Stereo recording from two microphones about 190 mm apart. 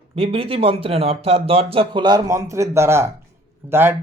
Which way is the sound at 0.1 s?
30° right (ahead or behind).